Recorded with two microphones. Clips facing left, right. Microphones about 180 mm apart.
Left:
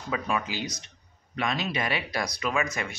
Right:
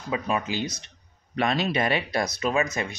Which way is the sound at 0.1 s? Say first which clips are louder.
Right 3 dB; 25° right (ahead or behind).